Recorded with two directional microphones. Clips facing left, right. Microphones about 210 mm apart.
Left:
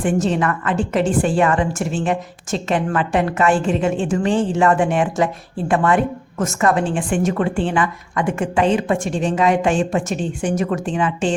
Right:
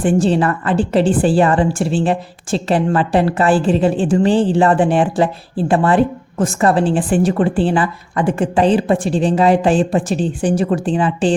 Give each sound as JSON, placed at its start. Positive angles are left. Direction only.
{"t": 0.0, "sound": "a woman's voice", "side_deg": -30}